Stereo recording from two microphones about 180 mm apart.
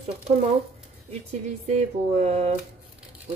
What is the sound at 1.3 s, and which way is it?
Speech, 40° right (ahead or behind).